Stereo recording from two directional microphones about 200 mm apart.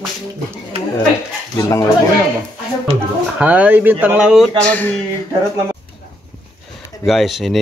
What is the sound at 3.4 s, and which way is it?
Speech, 5° right (ahead or behind).